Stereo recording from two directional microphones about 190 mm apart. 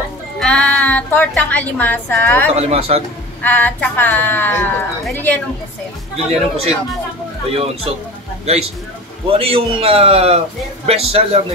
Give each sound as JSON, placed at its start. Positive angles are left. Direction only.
{"t": 0.4, "sound": "a woman's voice", "side_deg": 5}
{"t": 2.5, "sound": "a man's voice", "side_deg": -35}
{"t": 3.4, "sound": "speech", "side_deg": 10}
{"t": 6.1, "sound": "a man's voice", "side_deg": -30}
{"t": 9.3, "sound": "a man's voice", "side_deg": -30}